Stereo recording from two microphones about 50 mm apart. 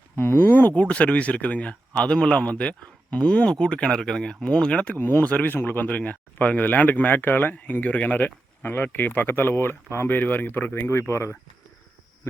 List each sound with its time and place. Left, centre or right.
0.2 s speech: left
0.7 s a man's voice: left
4.9 s speech: left
5.2 s a man's voice: left
5.5 s speech: left
5.9 s speech: left
8.7 s speech: left
10.8 s speech: left